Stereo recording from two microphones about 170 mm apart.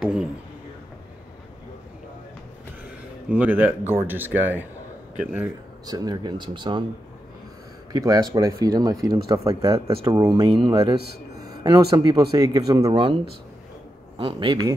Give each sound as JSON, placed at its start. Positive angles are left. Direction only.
{"t": 0.0, "sound": "a sound", "side_deg": -5}
{"t": 3.3, "sound": "speech", "side_deg": -10}
{"t": 5.9, "sound": "speech", "side_deg": -25}
{"t": 7.9, "sound": "speech", "side_deg": -20}